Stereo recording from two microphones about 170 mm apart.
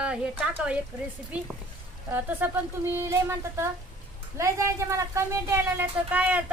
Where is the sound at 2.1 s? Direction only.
10° right (ahead or behind).